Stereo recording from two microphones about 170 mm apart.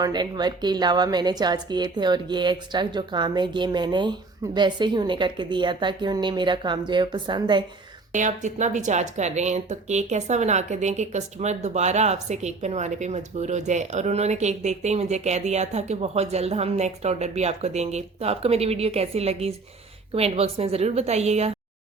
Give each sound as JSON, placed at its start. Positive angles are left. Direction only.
{"t": 0.0, "sound": "a woman's voice", "side_deg": -25}
{"t": 8.1, "sound": "speech", "side_deg": -45}